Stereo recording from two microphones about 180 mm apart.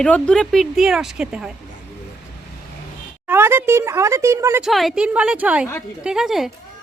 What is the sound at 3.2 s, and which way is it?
Speech, 15° right (ahead or behind).